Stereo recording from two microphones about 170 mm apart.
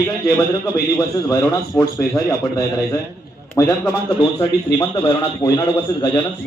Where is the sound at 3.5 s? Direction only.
20° left (ahead or behind).